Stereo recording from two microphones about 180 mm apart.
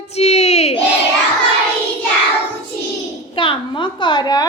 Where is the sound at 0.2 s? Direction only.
35° left (ahead or behind).